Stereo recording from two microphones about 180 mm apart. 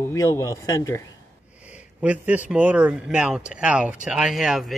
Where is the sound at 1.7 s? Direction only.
5° right (ahead or behind).